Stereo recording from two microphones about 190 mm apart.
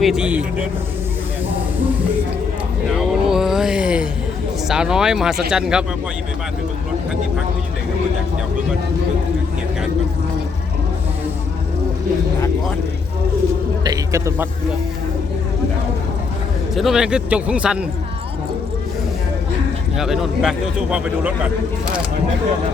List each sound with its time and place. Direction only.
0.0 s speech: 5° right (ahead or behind)
3.0 s a sound: centre (ahead or behind)
4.7 s speech: 5° right (ahead or behind)
13.8 s a sound: 20° right (ahead or behind)
16.7 s speech: centre (ahead or behind)
20.0 s speech: centre (ahead or behind)